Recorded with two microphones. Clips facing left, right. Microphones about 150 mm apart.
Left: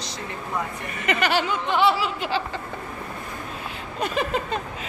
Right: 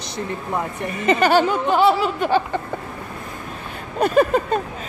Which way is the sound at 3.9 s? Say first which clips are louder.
Right 9 dB; 45° right (ahead or behind).